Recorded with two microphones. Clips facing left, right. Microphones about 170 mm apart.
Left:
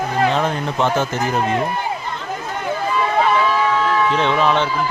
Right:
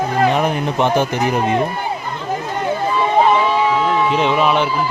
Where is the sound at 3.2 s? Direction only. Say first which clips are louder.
Right 3 dB; 20° right (ahead or behind).